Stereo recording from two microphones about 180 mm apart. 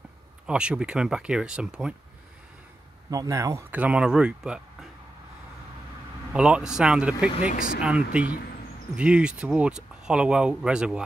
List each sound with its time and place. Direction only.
0.5 s speech: 5° right (ahead or behind)
3.1 s speech: 20° right (ahead or behind)
6.3 s speech: 5° right (ahead or behind)
7.5 s speech: 50° left (ahead or behind)
7.8 s speech: 5° right (ahead or behind)